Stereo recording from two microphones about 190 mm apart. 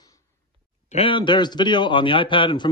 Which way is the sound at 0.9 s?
25° left (ahead or behind).